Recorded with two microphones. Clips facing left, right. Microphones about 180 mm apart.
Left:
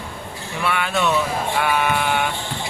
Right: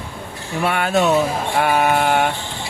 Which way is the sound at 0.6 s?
45° right (ahead or behind).